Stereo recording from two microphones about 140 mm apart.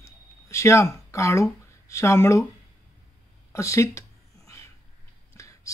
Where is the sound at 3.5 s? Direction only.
20° left (ahead or behind).